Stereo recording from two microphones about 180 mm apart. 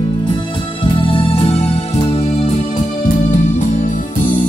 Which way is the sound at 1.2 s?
30° left (ahead or behind).